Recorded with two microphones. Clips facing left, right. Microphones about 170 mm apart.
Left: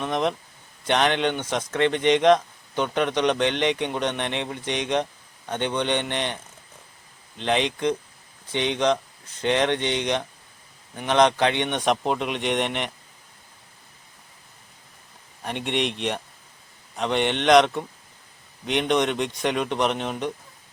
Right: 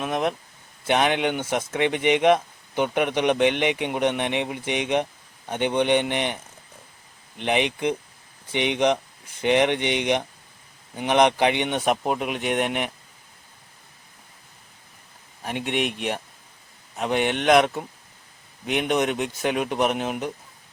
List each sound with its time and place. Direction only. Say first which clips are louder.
0.0 s speech: even; 5° right (ahead or behind)
15.4 s speech: even; 5° right (ahead or behind)